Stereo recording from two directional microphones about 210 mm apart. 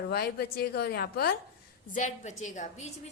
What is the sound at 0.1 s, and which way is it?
A woman's voice, 50° left (ahead or behind).